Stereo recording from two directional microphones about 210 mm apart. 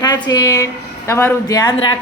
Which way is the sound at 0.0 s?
20° left (ahead or behind).